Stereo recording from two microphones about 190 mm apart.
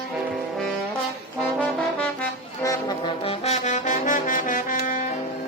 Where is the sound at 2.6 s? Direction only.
15° left (ahead or behind).